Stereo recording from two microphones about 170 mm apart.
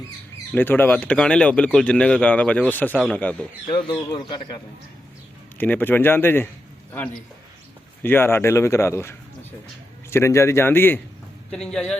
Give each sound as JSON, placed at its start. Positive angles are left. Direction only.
{"t": 0.5, "sound": "speech", "side_deg": 10}
{"t": 3.7, "sound": "speech", "side_deg": 25}
{"t": 5.5, "sound": "speech", "side_deg": 10}
{"t": 8.0, "sound": "speech", "side_deg": 15}